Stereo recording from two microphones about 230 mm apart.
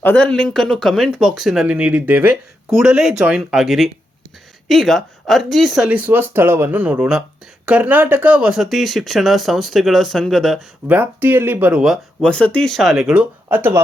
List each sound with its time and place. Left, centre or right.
0.0 s speech: centre